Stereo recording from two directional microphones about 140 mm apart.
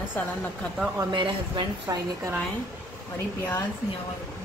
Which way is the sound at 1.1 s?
35° right (ahead or behind).